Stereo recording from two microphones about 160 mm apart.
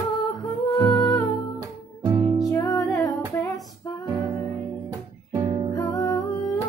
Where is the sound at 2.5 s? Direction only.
20° left (ahead or behind).